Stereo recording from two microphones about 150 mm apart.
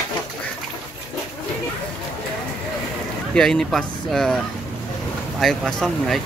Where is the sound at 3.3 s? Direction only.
5° left (ahead or behind).